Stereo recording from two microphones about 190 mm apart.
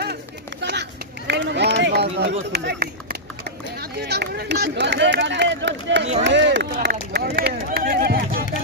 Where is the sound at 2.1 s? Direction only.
60° right (ahead or behind).